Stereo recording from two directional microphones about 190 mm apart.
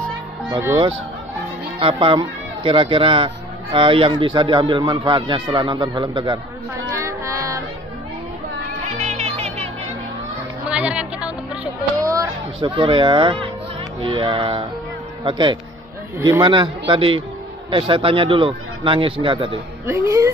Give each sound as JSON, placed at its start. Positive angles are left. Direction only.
{"t": 0.5, "sound": "a woman's voice", "side_deg": -15}
{"t": 1.8, "sound": "speech", "side_deg": -25}
{"t": 6.9, "sound": "child singing", "side_deg": -15}
{"t": 9.0, "sound": "music", "side_deg": -35}
{"t": 10.7, "sound": "a sound", "side_deg": -5}
{"t": 12.0, "sound": "speech", "side_deg": -15}
{"t": 19.9, "sound": "a woman's voice", "side_deg": -15}